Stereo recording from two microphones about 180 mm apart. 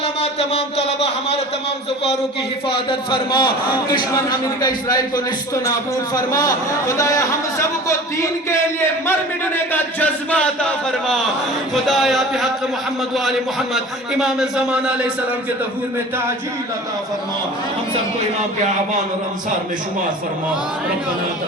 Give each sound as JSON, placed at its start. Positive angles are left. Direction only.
{"t": 0.0, "sound": "a man's voice", "side_deg": 35}
{"t": 2.6, "sound": "a man's voice", "side_deg": 30}